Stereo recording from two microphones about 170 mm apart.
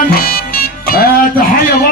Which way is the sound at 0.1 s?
60° left (ahead or behind).